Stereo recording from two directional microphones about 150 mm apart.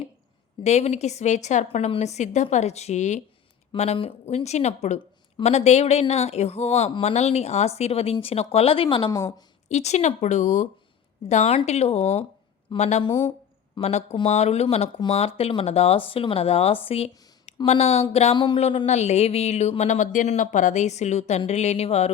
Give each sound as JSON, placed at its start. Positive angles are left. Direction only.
{"t": 0.6, "sound": "speech", "side_deg": 45}
{"t": 3.9, "sound": "speech", "side_deg": 40}
{"t": 9.0, "sound": "speech", "side_deg": 20}
{"t": 9.6, "sound": "speech", "side_deg": 50}
{"t": 13.0, "sound": "speech", "side_deg": 30}
{"t": 13.8, "sound": "speech", "side_deg": 50}
{"t": 18.3, "sound": "speech", "side_deg": 30}
{"t": 18.9, "sound": "speech", "side_deg": 50}